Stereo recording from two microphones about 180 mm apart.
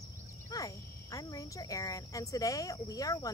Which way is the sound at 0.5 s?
20° left (ahead or behind).